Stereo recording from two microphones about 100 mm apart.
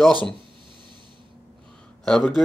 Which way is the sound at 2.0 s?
5° left (ahead or behind).